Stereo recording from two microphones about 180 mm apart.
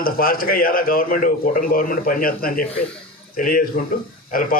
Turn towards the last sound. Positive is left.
turn(degrees=55)  # may be behind; listen again after turning